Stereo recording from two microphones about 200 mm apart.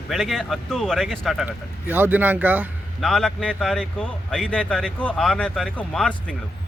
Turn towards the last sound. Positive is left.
turn(degrees=5)  # may be behind; listen again after turning